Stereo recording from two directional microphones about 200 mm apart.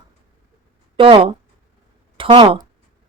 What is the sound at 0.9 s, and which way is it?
Speech, 25° right (ahead or behind).